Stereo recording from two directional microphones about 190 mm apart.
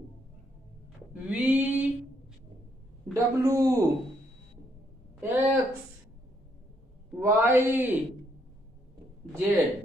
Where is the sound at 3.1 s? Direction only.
15° right (ahead or behind).